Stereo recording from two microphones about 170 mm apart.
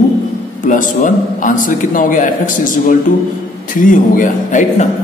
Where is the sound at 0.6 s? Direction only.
50° left (ahead or behind).